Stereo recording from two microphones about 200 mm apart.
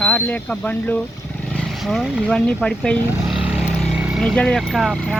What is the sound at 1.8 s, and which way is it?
Speech, centre (ahead or behind).